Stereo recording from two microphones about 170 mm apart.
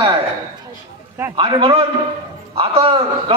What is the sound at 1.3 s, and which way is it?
Speech, 30° right (ahead or behind).